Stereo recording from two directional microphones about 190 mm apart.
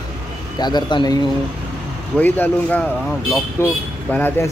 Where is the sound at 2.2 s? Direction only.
10° left (ahead or behind).